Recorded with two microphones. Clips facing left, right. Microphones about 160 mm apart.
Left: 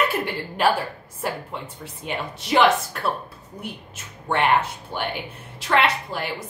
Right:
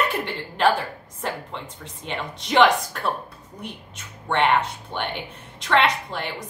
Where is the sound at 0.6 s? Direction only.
10° left (ahead or behind).